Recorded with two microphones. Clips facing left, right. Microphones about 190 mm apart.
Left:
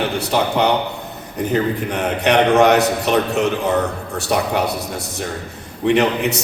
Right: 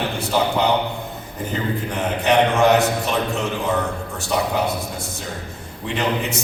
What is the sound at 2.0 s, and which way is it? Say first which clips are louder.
A man's voice: left 1 dB; 70° left (ahead or behind).